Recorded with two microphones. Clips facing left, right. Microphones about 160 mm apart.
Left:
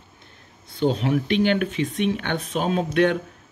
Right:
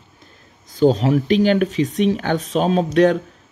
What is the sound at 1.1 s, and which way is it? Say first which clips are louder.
Speech: right 5 dB; 40° right (ahead or behind).